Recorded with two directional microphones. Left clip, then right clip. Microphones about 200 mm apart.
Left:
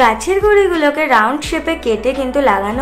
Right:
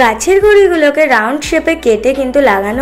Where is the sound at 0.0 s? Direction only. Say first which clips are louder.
Right 3 dB; 15° right (ahead or behind).